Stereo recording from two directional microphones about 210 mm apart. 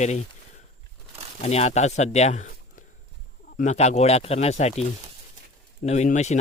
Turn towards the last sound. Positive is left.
turn(degrees=35)  # may be behind; listen again after turning